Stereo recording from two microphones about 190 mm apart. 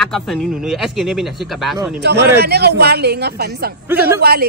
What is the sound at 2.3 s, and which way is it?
Speech, 60° right (ahead or behind).